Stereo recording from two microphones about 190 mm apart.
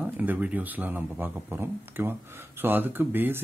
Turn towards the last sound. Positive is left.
turn(degrees=-10)  # may be behind; listen again after turning